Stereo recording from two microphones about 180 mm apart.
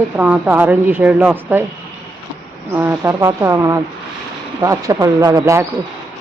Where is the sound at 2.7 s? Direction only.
15° right (ahead or behind).